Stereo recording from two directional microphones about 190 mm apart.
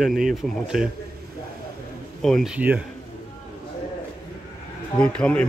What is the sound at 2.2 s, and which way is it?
Speech, centre (ahead or behind).